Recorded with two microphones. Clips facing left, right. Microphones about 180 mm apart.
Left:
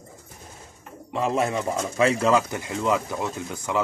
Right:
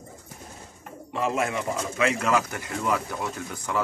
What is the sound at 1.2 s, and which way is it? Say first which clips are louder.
Speech: left 2 dB; 35° left (ahead or behind).